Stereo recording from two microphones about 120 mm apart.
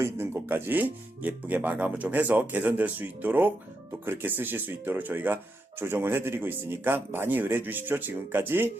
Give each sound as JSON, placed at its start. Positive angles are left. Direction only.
{"t": 0.0, "sound": "speech", "side_deg": -20}